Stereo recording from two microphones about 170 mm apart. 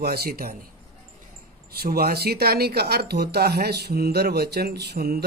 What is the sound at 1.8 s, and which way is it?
Speech, 65° right (ahead or behind).